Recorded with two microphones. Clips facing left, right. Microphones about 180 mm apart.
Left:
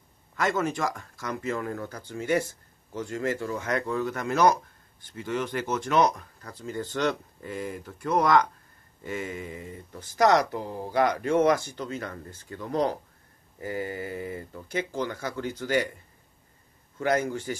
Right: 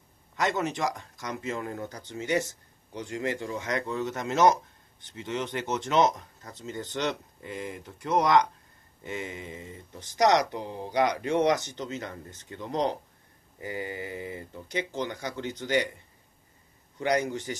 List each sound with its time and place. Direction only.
0.4 s speech: 20° right (ahead or behind)
17.0 s speech: 20° right (ahead or behind)